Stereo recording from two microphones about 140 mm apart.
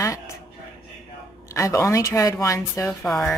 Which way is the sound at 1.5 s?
20° left (ahead or behind).